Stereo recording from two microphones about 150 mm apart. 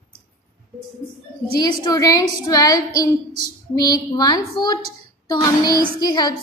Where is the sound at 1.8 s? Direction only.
25° left (ahead or behind).